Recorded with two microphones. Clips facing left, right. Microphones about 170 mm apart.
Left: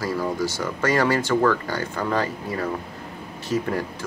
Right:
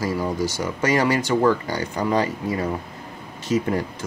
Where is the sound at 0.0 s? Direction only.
20° right (ahead or behind).